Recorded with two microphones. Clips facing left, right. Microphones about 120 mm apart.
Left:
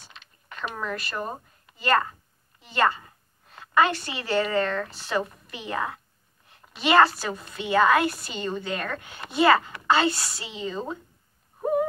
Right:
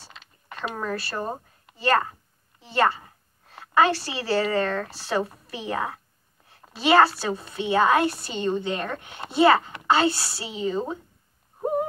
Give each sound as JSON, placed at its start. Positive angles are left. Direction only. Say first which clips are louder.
{"t": 0.0, "sound": "mechanisms", "louder": "right 2 dB", "side_deg": -30}
{"t": 2.6, "sound": "a woman's voice", "louder": "right 1 dB", "side_deg": -30}
{"t": 6.5, "sound": "a sound", "louder": "right 1 dB", "side_deg": -30}
{"t": 7.2, "sound": "a woman's voice", "louder": "right 4 dB", "side_deg": -30}